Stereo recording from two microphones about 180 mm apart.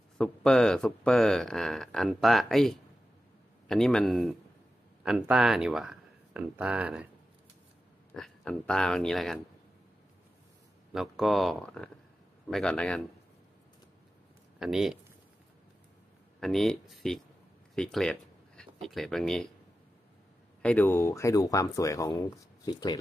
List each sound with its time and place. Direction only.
0.2 s speech: 5° left (ahead or behind)
8.1 s speech: 5° left (ahead or behind)
10.9 s speech: centre (ahead or behind)
14.6 s speech: centre (ahead or behind)
16.3 s speech: centre (ahead or behind)
20.6 s speech: 10° left (ahead or behind)